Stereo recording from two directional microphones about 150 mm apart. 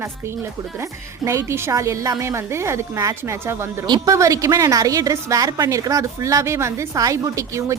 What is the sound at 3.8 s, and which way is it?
A woman's voice, 25° right (ahead or behind).